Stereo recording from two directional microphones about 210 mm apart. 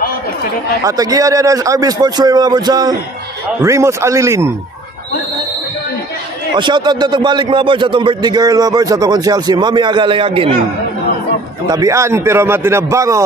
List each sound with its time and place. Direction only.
0.8 s a man's voice: 15° right (ahead or behind)
6.5 s a man's voice: 20° right (ahead or behind)
11.6 s a man's voice: 15° right (ahead or behind)